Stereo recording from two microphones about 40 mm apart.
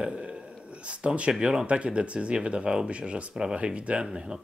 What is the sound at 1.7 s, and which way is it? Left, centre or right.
Speech, right.